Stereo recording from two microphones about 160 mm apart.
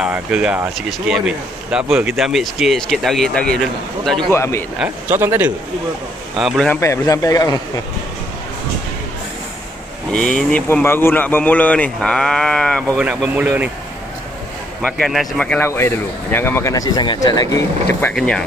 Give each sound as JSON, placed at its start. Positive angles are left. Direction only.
{"t": 0.0, "sound": "speech", "side_deg": -5}
{"t": 4.3, "sound": "speech", "side_deg": 15}
{"t": 4.7, "sound": "speech", "side_deg": -10}
{"t": 6.3, "sound": "speech", "side_deg": 0}
{"t": 6.7, "sound": "a man's voice", "side_deg": 20}
{"t": 10.1, "sound": "speech", "side_deg": 5}
{"t": 13.0, "sound": "speech", "side_deg": -5}
{"t": 14.8, "sound": "speech", "side_deg": 5}
{"t": 18.0, "sound": "speech", "side_deg": 5}